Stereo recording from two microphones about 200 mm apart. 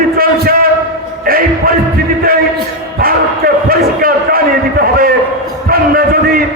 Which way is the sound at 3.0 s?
45° right (ahead or behind).